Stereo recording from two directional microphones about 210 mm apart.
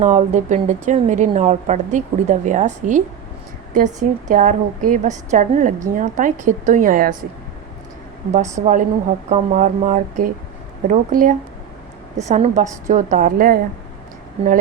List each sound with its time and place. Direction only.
0.0 s a woman's voice: 35° right (ahead or behind)
8.3 s a woman's voice: 35° right (ahead or behind)